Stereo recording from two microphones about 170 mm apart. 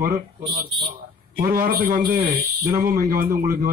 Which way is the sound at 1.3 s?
55° right (ahead or behind).